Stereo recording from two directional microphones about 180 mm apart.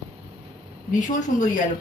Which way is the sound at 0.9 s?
45° left (ahead or behind).